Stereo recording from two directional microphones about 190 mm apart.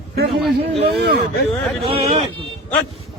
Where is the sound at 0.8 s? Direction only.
55° right (ahead or behind).